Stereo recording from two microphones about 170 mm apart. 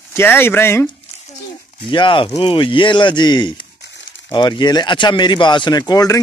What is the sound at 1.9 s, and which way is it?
Speech, 30° left (ahead or behind).